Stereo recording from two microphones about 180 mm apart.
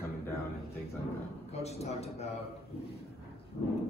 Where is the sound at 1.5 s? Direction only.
35° left (ahead or behind).